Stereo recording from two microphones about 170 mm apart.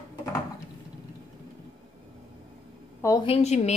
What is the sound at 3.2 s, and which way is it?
Speech, 35° left (ahead or behind).